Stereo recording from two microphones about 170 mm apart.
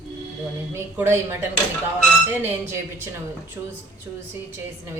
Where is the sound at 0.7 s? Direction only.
15° right (ahead or behind).